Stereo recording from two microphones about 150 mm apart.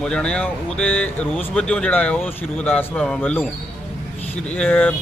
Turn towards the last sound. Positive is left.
turn(degrees=10)  # may be behind; listen again after turning